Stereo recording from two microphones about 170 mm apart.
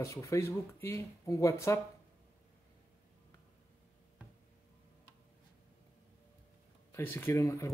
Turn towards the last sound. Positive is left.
turn(degrees=20)  # may be behind; listen again after turning